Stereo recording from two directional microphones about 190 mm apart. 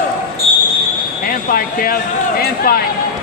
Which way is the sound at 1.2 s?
50° left (ahead or behind).